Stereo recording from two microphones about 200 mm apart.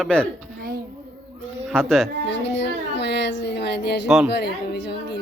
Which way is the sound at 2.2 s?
60° left (ahead or behind).